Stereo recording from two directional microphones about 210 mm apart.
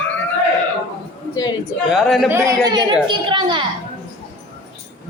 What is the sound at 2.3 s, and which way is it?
A woman's voice, 15° right (ahead or behind).